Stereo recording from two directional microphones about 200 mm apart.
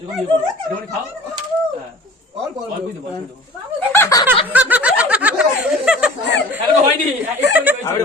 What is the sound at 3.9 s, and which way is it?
Snicker, 15° left (ahead or behind).